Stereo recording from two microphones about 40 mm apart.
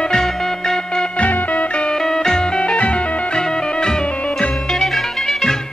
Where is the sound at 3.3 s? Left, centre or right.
Centre.